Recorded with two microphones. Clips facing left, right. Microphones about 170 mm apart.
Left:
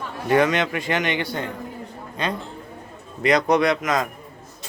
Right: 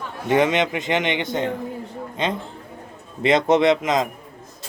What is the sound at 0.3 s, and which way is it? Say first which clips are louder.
Speech: right 1 dB; 20° right (ahead or behind).